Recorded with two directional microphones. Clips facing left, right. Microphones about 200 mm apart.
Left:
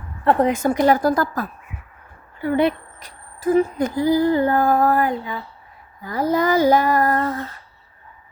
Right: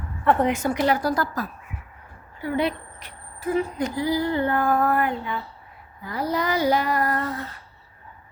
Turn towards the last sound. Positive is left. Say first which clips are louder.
# left 5 dB
turn(degrees=45)  # may be behind; listen again after turning